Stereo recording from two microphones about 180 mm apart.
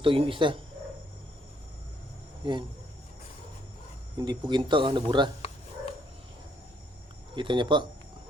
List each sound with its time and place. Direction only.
0.0 s speech: 30° right (ahead or behind)
2.4 s speech: 25° right (ahead or behind)
4.2 s speech: 25° right (ahead or behind)
7.3 s speech: 25° right (ahead or behind)